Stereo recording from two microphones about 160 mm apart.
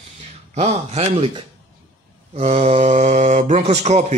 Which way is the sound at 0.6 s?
40° right (ahead or behind).